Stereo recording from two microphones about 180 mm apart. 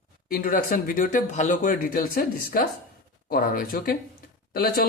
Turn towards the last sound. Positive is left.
turn(degrees=55)  # may be behind; listen again after turning